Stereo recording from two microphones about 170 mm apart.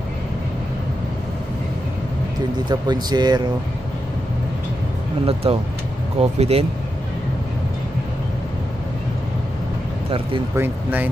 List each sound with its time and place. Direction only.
2.7 s speech: 25° right (ahead or behind)
5.2 s speech: 35° right (ahead or behind)
10.5 s speech: 10° right (ahead or behind)